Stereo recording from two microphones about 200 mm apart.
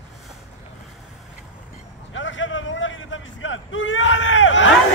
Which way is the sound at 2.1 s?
70° left (ahead or behind).